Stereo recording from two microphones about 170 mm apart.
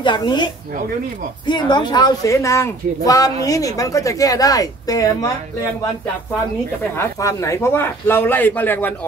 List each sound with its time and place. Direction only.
0.0 s speech: 25° left (ahead or behind)
7.0 s a man's voice: 20° left (ahead or behind)